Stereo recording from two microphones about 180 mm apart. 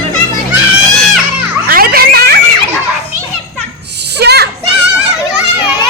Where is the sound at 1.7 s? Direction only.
55° right (ahead or behind).